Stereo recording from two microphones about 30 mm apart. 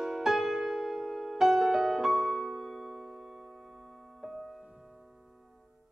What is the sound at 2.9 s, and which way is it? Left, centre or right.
Music, centre.